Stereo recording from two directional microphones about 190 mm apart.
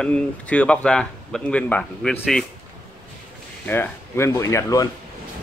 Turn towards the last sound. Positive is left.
turn(degrees=15)  # may be behind; listen again after turning